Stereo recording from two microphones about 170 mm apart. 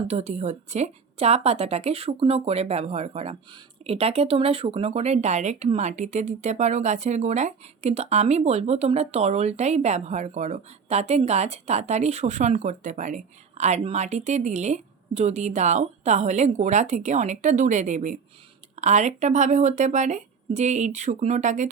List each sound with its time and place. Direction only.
0.1 s speech: 40° right (ahead or behind)